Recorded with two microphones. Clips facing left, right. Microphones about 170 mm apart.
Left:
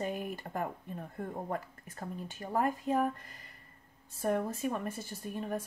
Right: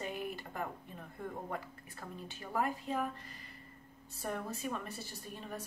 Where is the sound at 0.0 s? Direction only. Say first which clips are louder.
Left 4 dB; 45° left (ahead or behind).